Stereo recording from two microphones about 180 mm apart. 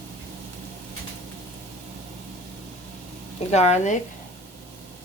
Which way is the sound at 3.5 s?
40° left (ahead or behind).